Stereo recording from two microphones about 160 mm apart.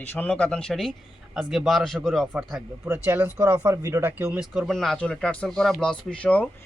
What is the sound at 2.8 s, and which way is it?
Speech, 15° right (ahead or behind).